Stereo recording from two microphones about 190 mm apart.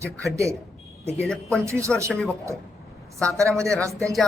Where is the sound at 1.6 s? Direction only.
15° right (ahead or behind).